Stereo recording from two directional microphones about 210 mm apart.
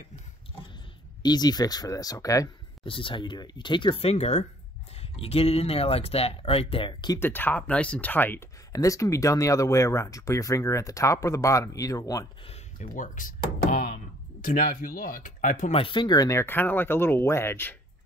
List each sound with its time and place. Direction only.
1.2 s speech: 20° left (ahead or behind)
7.2 s speech: 10° left (ahead or behind)
12.4 s speech: 35° left (ahead or behind); by 17.7 s 10° left (ahead or behind)